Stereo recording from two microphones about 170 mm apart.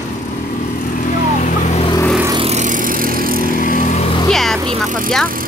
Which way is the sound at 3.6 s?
50° left (ahead or behind).